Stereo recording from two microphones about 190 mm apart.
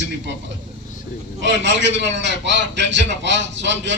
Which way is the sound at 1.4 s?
70° right (ahead or behind).